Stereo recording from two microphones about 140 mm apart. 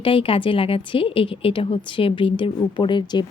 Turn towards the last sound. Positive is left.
turn(degrees=35)  # may be behind; listen again after turning